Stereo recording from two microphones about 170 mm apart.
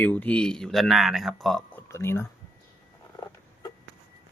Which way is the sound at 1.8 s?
15° left (ahead or behind).